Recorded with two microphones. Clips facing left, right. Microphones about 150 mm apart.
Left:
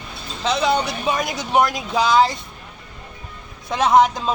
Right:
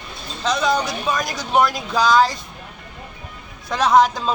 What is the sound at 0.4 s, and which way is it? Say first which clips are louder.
A man's voice: even; 25° left (ahead or behind).